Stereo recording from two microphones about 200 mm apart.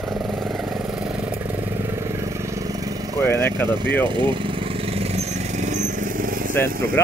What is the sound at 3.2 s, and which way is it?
Speech, 10° left (ahead or behind).